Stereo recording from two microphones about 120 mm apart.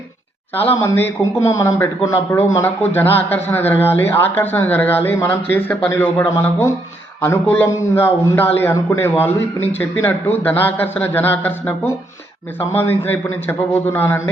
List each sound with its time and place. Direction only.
0.9 s a man's voice: 15° left (ahead or behind)